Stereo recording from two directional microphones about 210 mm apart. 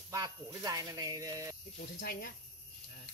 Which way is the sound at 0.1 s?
20° right (ahead or behind).